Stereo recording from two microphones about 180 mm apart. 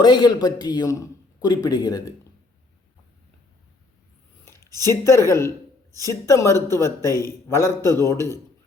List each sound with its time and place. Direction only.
0.0 s a man's voice: 25° left (ahead or behind)
4.4 s a man's voice: 15° left (ahead or behind)